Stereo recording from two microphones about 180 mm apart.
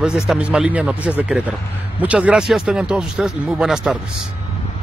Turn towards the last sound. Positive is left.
turn(degrees=-5)  # may be behind; listen again after turning